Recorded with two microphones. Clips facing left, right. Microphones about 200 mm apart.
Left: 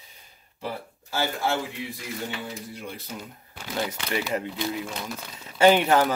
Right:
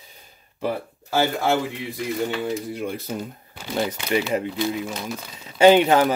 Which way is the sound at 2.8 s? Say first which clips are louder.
Right 9 dB; 50° right (ahead or behind).